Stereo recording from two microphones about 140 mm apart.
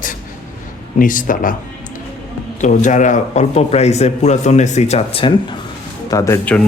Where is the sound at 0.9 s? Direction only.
75° left (ahead or behind).